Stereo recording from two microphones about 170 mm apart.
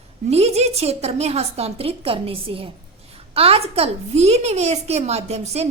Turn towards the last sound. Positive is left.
turn(degrees=-40)  # may be behind; listen again after turning